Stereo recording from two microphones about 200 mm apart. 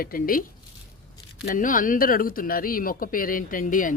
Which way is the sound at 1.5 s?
40° left (ahead or behind).